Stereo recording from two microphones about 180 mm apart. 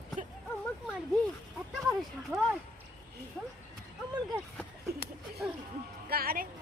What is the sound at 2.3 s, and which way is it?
Speech, 5° right (ahead or behind).